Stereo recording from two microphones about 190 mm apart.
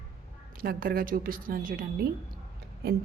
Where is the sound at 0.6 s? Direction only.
50° right (ahead or behind).